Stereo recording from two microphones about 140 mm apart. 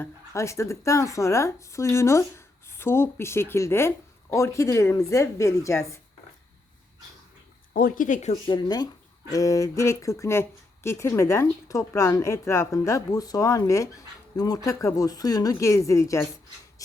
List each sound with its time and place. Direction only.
0.0 s speech: 20° left (ahead or behind)
7.7 s speech: 90° left; by 8.4 s 60° left (ahead or behind)
8.4 s speech: 30° left (ahead or behind)